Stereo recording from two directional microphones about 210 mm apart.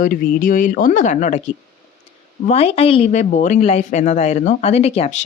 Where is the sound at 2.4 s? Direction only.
30° left (ahead or behind).